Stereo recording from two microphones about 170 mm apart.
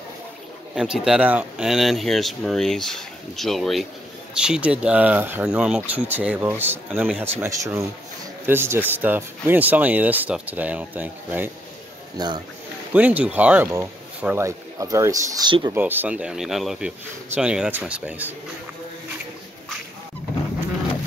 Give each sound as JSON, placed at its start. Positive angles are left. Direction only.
{"t": 0.7, "sound": "speech", "side_deg": -5}
{"t": 12.9, "sound": "speech", "side_deg": -10}